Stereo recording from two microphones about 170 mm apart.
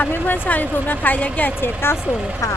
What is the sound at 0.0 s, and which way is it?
Speech, 10° left (ahead or behind).